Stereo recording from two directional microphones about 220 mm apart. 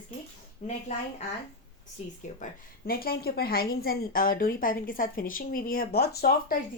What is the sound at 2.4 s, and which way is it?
A woman's voice, 40° left (ahead or behind).